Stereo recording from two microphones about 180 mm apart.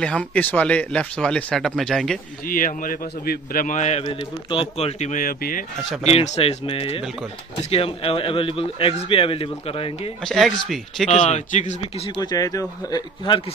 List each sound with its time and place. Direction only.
0.0 s speech: 5° left (ahead or behind)
2.4 s a man's voice: 50° left (ahead or behind)
4.0 s speech: 25° left (ahead or behind); by 5.7 s 50° left (ahead or behind)
6.0 s speech: 35° left (ahead or behind)
10.2 s speech: centre (ahead or behind)
11.1 s a man's voice: 40° left (ahead or behind); by 13.4 s 25° left (ahead or behind)